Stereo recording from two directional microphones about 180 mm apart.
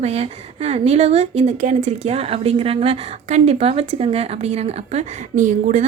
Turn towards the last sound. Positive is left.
turn(degrees=-45)  # may be behind; listen again after turning